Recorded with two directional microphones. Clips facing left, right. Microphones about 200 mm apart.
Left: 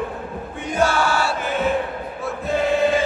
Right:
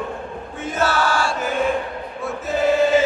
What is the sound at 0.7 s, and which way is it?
Chant, 10° left (ahead or behind).